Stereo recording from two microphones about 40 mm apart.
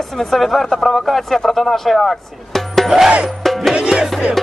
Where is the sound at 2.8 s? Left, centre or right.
Centre.